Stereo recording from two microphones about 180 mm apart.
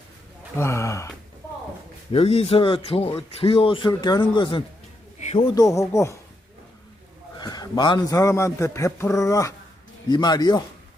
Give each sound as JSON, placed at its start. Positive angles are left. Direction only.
{"t": 0.5, "sound": "a man's voice", "side_deg": 15}
{"t": 2.1, "sound": "a man's voice", "side_deg": 35}
{"t": 7.3, "sound": "a man's voice", "side_deg": 20}